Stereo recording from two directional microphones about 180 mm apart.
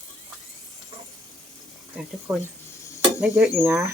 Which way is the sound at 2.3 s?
15° right (ahead or behind).